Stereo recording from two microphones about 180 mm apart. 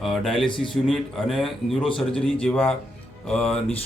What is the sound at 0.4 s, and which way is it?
Speech, 25° left (ahead or behind).